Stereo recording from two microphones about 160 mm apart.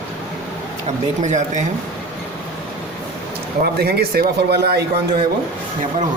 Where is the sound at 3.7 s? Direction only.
75° right (ahead or behind).